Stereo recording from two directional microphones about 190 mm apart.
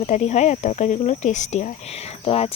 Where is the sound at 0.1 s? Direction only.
35° left (ahead or behind).